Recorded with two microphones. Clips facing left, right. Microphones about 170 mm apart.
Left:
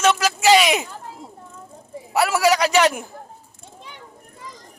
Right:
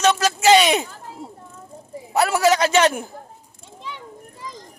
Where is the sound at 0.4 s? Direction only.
25° right (ahead or behind).